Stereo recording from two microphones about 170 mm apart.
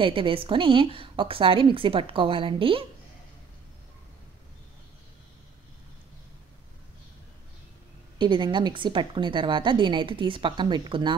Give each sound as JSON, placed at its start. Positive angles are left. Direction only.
{"t": 0.0, "sound": "a woman's voice", "side_deg": -30}
{"t": 8.2, "sound": "a woman's voice", "side_deg": -30}